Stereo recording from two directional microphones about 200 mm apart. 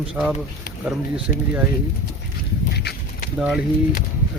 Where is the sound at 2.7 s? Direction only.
55° left (ahead or behind).